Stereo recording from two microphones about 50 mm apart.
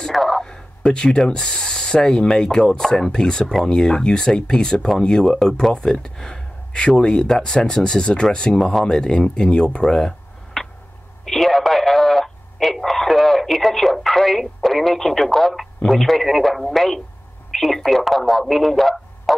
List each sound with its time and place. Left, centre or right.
0.0 s speech: centre
11.2 s radio: centre
15.9 s speech: centre